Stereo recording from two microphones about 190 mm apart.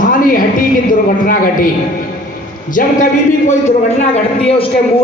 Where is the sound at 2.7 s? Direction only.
45° left (ahead or behind).